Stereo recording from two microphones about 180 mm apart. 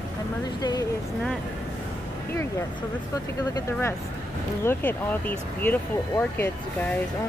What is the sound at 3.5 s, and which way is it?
Speech, 15° left (ahead or behind).